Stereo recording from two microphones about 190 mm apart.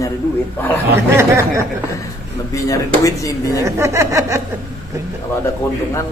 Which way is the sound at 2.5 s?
15° left (ahead or behind).